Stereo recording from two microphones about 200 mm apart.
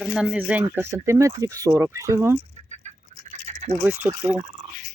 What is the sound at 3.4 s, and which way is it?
Rattle, 35° right (ahead or behind).